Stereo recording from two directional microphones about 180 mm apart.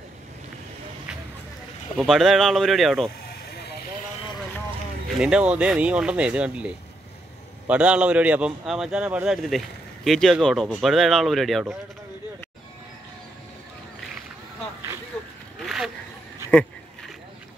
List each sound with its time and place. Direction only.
2.0 s speech: centre (ahead or behind)
5.2 s speech: 5° right (ahead or behind)
15.6 s a sound: centre (ahead or behind)